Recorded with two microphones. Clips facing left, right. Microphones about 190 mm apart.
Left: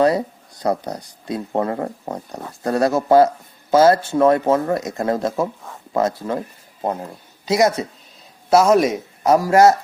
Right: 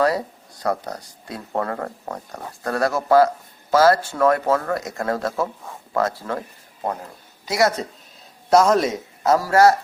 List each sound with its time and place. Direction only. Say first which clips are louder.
0.6 s a man's voice: left 3 dB; 20° left (ahead or behind)
8.4 s speech: left 2 dB; 10° left (ahead or behind)